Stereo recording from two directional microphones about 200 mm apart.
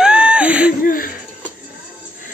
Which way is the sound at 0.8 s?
45° left (ahead or behind).